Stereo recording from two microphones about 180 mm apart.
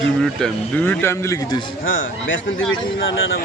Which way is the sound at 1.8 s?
90° left.